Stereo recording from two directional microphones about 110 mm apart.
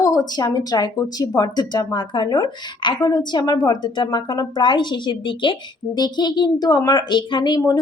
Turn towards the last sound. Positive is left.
turn(degrees=45)  # may be behind; listen again after turning